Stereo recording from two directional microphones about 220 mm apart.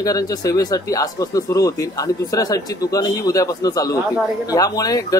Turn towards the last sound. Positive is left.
turn(degrees=15)  # may be behind; listen again after turning